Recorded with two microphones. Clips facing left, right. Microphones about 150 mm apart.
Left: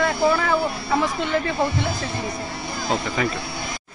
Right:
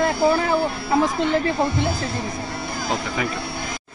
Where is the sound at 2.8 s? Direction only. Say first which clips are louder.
Left 2 dB; 10° right (ahead or behind).